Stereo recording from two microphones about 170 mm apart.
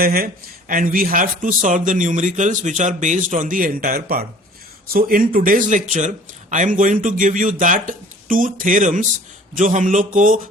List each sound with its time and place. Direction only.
0.0 s speech: 60° right (ahead or behind)